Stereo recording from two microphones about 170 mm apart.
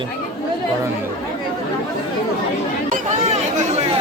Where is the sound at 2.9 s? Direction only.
45° right (ahead or behind).